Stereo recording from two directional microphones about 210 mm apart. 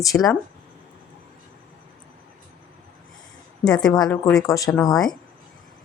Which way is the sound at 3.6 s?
5° left (ahead or behind).